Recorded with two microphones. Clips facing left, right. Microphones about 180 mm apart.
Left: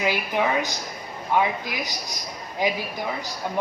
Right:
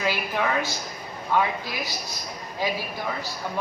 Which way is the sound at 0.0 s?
15° left (ahead or behind).